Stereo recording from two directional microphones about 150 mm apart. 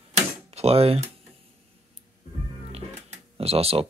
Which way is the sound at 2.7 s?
40° right (ahead or behind).